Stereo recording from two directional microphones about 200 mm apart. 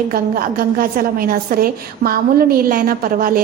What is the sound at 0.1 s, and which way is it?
A woman's voice, 45° right (ahead or behind).